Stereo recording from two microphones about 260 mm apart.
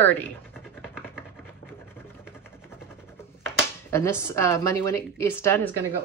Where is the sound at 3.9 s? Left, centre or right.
Centre.